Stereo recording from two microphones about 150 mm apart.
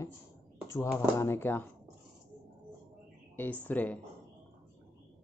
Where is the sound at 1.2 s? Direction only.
15° left (ahead or behind).